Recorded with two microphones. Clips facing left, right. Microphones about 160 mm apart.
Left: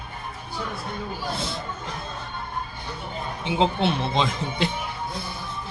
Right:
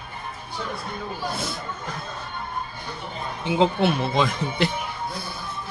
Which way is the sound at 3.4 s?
20° left (ahead or behind).